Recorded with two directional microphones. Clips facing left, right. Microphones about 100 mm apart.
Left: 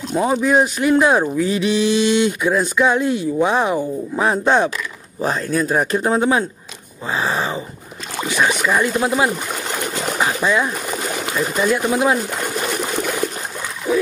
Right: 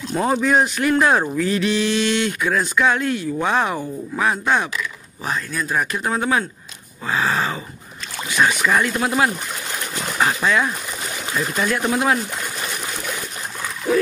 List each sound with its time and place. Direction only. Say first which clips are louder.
0.1 s speech: left 2 dB; 10° left (ahead or behind)
4.2 s speech: left 4 dB; 30° left (ahead or behind)